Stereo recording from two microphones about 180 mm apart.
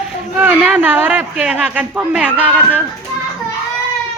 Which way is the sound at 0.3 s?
10° right (ahead or behind).